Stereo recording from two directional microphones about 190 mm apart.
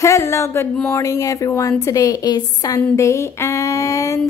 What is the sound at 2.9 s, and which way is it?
Speech, 15° left (ahead or behind).